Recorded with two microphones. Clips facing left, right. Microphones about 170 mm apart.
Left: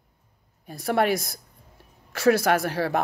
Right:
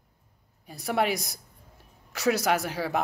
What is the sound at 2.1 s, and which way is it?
Speech, 20° right (ahead or behind).